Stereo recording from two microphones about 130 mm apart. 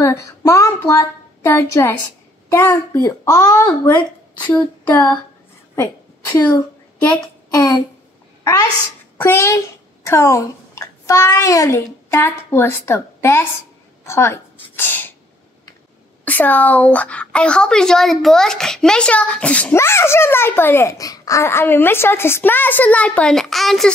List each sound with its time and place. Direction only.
0.0 s speech: 25° left (ahead or behind)
4.5 s a woman's voice: 10° left (ahead or behind)
7.5 s speech: 25° left (ahead or behind)
9.2 s a child's voice: 20° left (ahead or behind)
14.0 s sneeze: 20° left (ahead or behind)
16.3 s a woman's voice: 15° left (ahead or behind)